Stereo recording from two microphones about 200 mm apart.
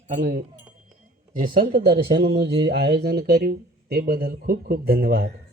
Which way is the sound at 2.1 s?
60° right (ahead or behind).